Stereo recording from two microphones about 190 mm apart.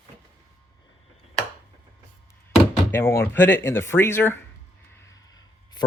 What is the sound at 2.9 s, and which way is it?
Speech, 10° left (ahead or behind).